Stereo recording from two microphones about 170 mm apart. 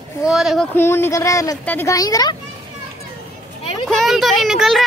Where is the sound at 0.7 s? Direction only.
15° left (ahead or behind).